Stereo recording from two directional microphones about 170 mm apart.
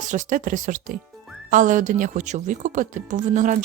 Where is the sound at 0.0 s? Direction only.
45° right (ahead or behind).